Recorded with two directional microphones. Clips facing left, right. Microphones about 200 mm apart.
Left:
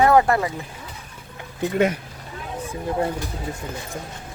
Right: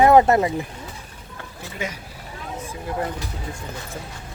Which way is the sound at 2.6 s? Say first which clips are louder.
Left 4 dB; 30° left (ahead or behind).